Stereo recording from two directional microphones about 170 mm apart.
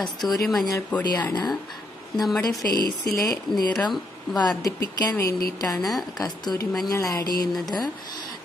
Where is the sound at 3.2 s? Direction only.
20° left (ahead or behind).